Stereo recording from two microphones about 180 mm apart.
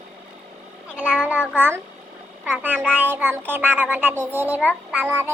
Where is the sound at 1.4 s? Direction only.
10° right (ahead or behind).